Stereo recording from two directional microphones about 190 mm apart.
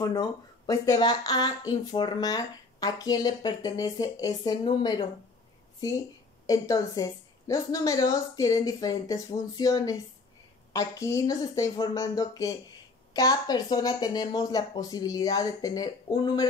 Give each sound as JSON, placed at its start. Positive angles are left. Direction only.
{"t": 0.0, "sound": "speech", "side_deg": 20}
{"t": 6.4, "sound": "a woman's voice", "side_deg": 15}